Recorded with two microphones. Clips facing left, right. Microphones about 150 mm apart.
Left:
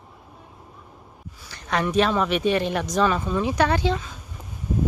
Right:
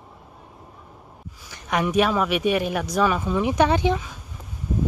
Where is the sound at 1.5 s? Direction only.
10° right (ahead or behind).